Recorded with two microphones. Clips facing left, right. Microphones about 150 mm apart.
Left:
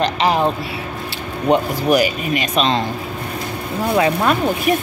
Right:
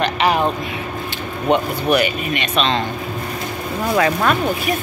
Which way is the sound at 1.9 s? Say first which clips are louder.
Left 2 dB; 35° left (ahead or behind).